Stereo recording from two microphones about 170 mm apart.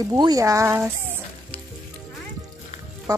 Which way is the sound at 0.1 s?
20° right (ahead or behind).